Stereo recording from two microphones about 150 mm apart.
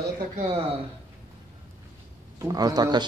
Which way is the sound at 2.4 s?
25° right (ahead or behind).